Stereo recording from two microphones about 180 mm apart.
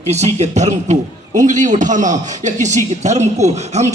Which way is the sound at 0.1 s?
40° right (ahead or behind).